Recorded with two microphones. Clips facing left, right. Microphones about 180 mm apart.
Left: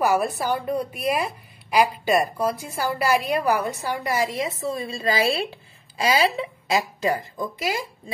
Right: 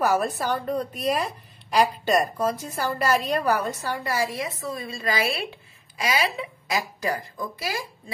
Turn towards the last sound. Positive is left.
turn(degrees=20)  # may be behind; listen again after turning